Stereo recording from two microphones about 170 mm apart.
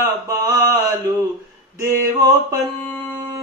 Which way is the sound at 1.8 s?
20° right (ahead or behind).